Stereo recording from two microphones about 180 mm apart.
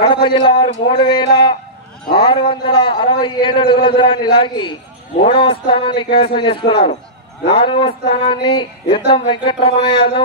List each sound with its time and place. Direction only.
0.1 s a man's voice: 25° left (ahead or behind)